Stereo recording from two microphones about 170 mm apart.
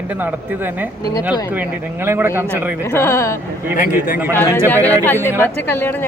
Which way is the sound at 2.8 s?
15° left (ahead or behind).